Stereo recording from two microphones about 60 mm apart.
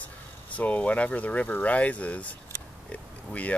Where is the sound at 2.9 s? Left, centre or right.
Left.